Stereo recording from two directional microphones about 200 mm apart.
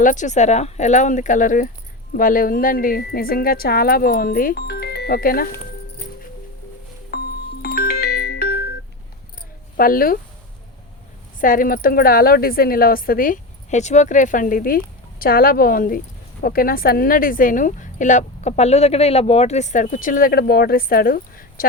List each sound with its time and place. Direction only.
0.0 s a woman's voice: 40° left (ahead or behind)
7.1 s music: 50° left (ahead or behind)
9.7 s a woman's voice: 45° left (ahead or behind)
11.3 s a woman's voice: 45° left (ahead or behind)